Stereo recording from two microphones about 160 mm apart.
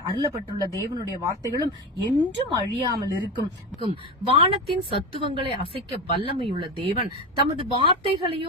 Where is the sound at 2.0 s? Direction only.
25° right (ahead or behind).